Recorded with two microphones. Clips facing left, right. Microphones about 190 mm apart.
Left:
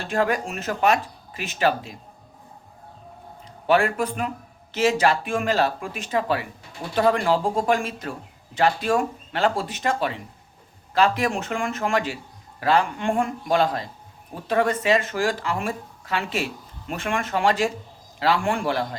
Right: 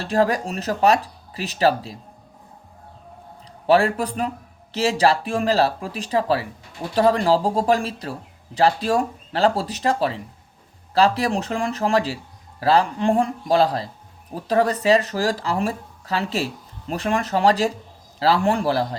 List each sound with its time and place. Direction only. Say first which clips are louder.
0.0 s speech: right 3 dB; 35° right (ahead or behind)
3.7 s speech: right 3 dB; 35° right (ahead or behind)